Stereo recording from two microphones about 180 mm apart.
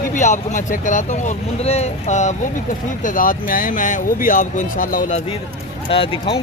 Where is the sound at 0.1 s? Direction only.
40° left (ahead or behind).